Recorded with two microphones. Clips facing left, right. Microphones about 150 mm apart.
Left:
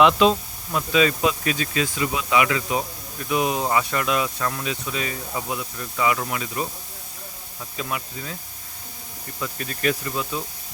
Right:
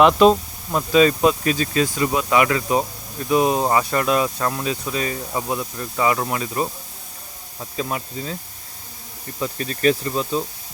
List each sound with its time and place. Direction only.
0.0 s speech: 45° right (ahead or behind)
9.4 s speech: 30° right (ahead or behind)